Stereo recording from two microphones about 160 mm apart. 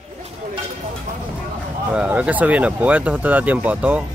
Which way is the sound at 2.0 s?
5° right (ahead or behind).